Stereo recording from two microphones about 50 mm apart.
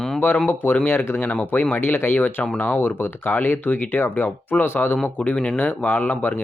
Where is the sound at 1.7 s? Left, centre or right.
Left.